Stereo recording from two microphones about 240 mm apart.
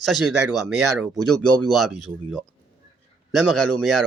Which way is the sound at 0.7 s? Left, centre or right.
Right.